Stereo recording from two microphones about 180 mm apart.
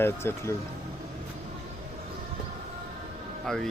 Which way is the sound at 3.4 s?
Centre (ahead or behind).